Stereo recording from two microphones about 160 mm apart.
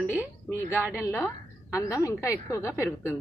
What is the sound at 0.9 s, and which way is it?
A woman's voice, 15° left (ahead or behind).